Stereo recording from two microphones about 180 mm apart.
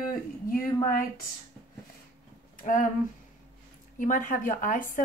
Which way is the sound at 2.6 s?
45° left (ahead or behind).